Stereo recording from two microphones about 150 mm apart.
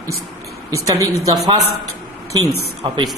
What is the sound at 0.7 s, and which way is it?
Speech, 20° right (ahead or behind).